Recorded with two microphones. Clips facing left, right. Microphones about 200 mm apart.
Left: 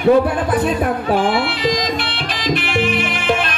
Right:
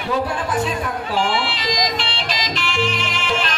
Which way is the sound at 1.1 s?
55° left (ahead or behind).